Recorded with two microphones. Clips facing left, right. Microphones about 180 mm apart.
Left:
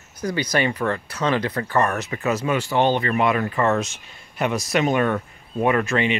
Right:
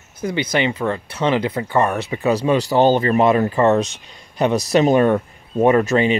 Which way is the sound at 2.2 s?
30° right (ahead or behind).